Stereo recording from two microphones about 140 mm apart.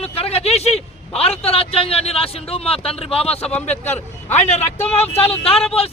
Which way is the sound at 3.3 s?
10° left (ahead or behind).